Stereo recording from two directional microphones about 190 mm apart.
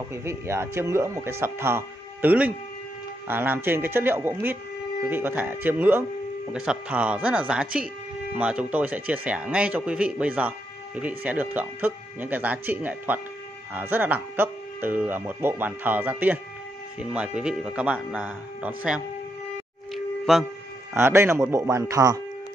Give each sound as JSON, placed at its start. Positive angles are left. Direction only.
{"t": 0.1, "sound": "speech", "side_deg": -15}
{"t": 19.9, "sound": "music", "side_deg": 0}
{"t": 20.9, "sound": "speech", "side_deg": -15}